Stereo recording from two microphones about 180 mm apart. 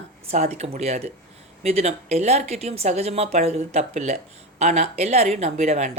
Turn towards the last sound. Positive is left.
turn(degrees=-40)  # may be behind; listen again after turning